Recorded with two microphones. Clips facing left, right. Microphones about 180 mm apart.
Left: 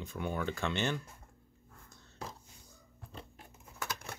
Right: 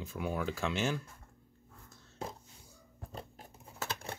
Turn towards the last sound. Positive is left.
turn(degrees=-30)  # may be behind; listen again after turning